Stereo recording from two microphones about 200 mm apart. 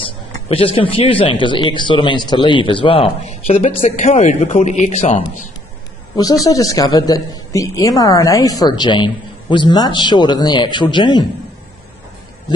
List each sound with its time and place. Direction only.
0.0 s a woman's voice: 25° left (ahead or behind)
6.4 s a woman's voice: 15° left (ahead or behind)